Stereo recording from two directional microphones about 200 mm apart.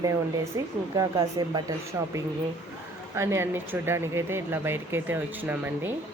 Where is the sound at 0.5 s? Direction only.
15° right (ahead or behind).